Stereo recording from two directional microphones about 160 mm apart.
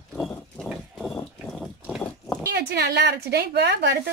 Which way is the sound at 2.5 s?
90° right.